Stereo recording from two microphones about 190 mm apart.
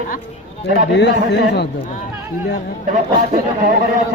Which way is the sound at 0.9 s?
65° left (ahead or behind).